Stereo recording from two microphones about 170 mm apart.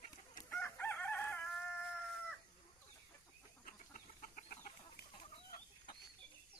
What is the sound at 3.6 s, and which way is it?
Chicken, 55° left (ahead or behind).